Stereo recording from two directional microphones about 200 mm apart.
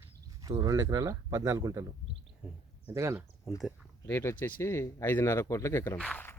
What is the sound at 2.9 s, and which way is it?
Speech, 15° right (ahead or behind).